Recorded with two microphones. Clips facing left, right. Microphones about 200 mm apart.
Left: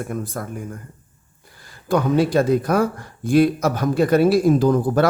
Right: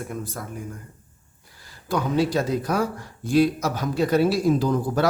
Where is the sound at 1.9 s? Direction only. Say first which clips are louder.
Left 5 dB; 55° left (ahead or behind).